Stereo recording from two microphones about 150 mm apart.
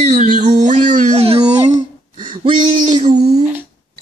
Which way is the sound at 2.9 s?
50° right (ahead or behind).